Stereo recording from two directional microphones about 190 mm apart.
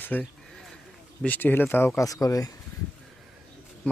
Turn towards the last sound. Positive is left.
turn(degrees=5)  # may be behind; listen again after turning